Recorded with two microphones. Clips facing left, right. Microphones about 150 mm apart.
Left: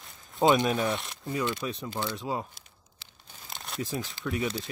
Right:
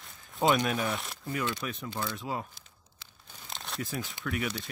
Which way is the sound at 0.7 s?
Centre (ahead or behind).